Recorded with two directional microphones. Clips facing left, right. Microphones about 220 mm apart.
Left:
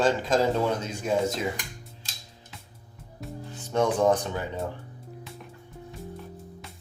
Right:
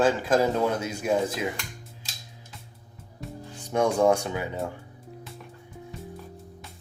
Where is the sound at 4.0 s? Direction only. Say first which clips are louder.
Right 1 dB; 10° right (ahead or behind).